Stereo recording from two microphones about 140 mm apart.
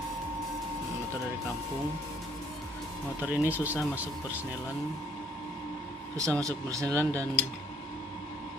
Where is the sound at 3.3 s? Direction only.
10° right (ahead or behind).